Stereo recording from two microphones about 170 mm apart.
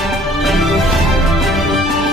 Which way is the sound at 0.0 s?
Centre (ahead or behind).